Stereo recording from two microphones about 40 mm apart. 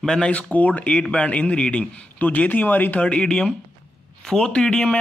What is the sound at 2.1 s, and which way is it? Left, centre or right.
Speech, left.